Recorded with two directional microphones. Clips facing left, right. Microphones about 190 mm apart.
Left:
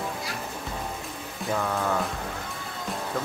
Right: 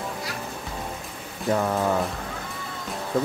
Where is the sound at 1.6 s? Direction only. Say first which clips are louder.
Right 3 dB; 20° right (ahead or behind).